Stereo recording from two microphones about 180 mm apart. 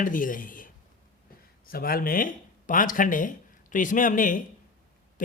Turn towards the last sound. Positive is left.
turn(degrees=45)  # may be behind; listen again after turning